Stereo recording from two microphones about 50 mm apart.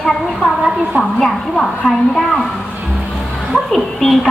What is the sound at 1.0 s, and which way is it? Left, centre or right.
A woman's voice, centre.